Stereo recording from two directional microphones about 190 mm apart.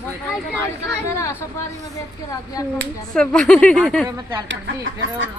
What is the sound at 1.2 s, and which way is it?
Speech, 15° left (ahead or behind).